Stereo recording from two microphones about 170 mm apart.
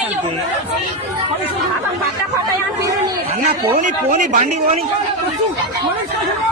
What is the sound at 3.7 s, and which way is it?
A man's voice, 45° right (ahead or behind).